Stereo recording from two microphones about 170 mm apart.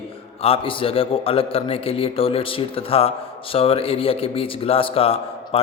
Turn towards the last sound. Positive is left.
turn(degrees=35)  # may be behind; listen again after turning